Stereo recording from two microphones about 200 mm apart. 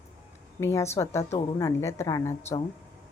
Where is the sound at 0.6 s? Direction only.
15° left (ahead or behind).